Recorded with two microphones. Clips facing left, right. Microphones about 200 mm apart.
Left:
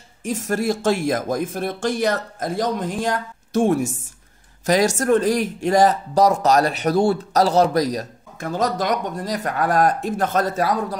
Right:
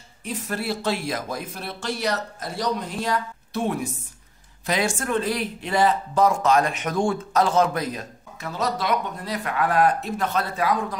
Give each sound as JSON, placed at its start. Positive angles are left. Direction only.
{"t": 0.2, "sound": "speech", "side_deg": 45}